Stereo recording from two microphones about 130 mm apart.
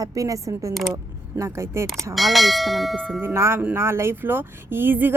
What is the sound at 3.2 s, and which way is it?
Speech, 20° right (ahead or behind).